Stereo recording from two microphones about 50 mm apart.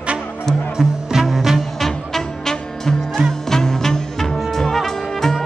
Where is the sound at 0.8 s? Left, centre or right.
Centre.